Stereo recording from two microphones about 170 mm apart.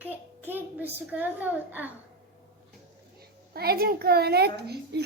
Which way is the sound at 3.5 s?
65° right (ahead or behind).